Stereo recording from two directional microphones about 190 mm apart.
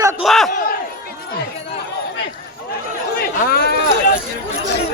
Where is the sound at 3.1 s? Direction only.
55° left (ahead or behind).